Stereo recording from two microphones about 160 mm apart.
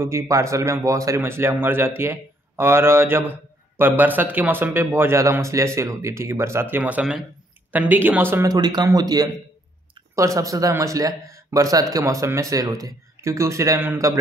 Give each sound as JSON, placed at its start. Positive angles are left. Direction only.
{"t": 0.0, "sound": "speech", "side_deg": -20}